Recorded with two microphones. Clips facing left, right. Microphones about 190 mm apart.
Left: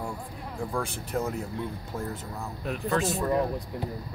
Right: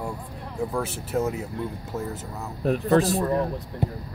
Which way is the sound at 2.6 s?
35° right (ahead or behind).